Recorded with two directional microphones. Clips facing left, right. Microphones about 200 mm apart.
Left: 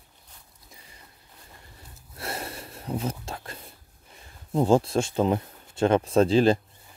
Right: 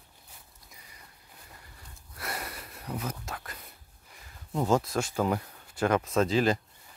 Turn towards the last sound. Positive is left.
turn(degrees=30)  # may be behind; listen again after turning